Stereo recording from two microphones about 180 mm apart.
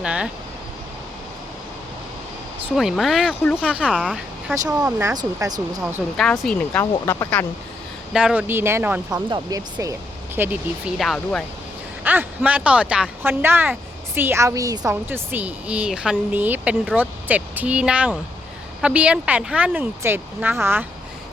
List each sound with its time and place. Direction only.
0.0 s vehicle: 5° right (ahead or behind)
2.6 s speech: centre (ahead or behind)
4.8 s speech: 15° right (ahead or behind)
6.4 s speech: 5° left (ahead or behind)
8.1 s speech: 5° right (ahead or behind)
9.3 s speech: 20° right (ahead or behind); by 11.4 s 5° left (ahead or behind)
12.0 s speech: 10° right (ahead or behind)